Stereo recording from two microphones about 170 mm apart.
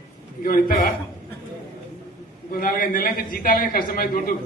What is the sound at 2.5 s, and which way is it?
A man's voice, 55° left (ahead or behind).